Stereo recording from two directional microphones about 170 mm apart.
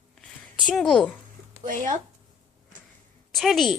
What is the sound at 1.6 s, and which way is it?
Speech, 50° right (ahead or behind).